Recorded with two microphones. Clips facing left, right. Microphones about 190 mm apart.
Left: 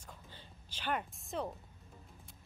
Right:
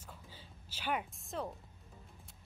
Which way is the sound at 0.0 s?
5° right (ahead or behind).